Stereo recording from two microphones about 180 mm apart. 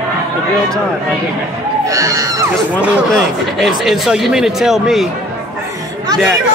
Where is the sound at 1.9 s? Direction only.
20° right (ahead or behind).